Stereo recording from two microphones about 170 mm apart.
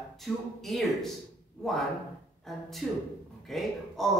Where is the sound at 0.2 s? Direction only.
Centre (ahead or behind).